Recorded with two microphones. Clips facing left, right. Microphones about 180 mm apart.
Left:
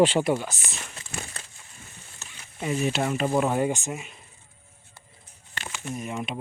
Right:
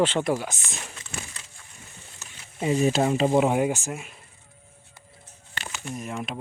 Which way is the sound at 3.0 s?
25° right (ahead or behind).